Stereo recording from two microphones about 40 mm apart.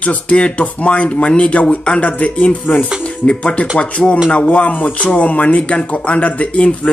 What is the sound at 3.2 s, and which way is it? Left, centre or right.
Speech, left.